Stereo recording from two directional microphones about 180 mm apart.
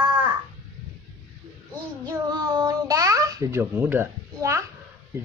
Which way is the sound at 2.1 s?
20° right (ahead or behind).